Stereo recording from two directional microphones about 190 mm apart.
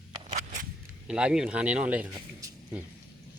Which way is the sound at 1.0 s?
5° right (ahead or behind).